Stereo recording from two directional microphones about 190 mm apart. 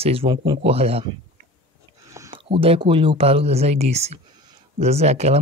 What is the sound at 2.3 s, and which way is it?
Speech, 30° right (ahead or behind).